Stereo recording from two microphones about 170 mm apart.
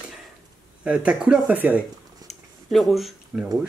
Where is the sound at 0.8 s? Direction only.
5° right (ahead or behind).